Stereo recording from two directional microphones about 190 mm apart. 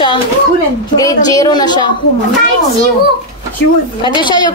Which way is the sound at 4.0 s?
25° left (ahead or behind).